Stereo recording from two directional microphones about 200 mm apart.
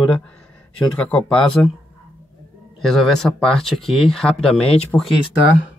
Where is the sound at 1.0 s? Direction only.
5° left (ahead or behind).